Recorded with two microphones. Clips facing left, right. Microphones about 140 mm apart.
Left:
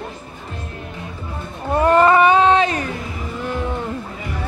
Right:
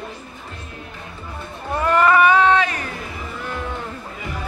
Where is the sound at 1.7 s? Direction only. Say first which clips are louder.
Left 3 dB; 30° left (ahead or behind).